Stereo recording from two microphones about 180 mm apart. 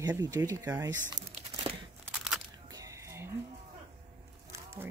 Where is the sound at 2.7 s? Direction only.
20° right (ahead or behind).